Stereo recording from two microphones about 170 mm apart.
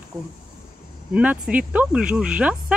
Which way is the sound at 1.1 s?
10° right (ahead or behind).